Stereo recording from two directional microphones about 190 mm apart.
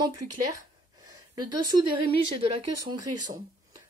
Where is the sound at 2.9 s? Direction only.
20° right (ahead or behind).